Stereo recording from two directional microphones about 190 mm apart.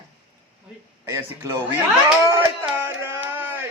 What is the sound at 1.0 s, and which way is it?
Speech, 15° right (ahead or behind).